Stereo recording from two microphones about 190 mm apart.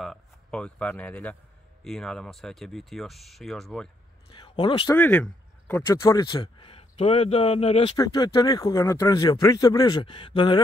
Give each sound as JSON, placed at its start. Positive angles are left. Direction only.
{"t": 0.0, "sound": "speech", "side_deg": 5}
{"t": 4.3, "sound": "a sound", "side_deg": 25}
{"t": 4.9, "sound": "speech", "side_deg": 10}
{"t": 5.9, "sound": "speech", "side_deg": 20}
{"t": 8.0, "sound": "speech", "side_deg": 20}